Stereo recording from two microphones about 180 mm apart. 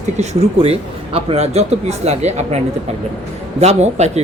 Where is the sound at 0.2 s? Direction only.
35° right (ahead or behind).